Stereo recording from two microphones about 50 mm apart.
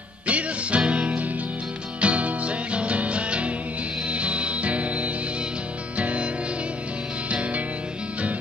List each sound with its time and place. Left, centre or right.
0.3 s music: right
7.2 s music: right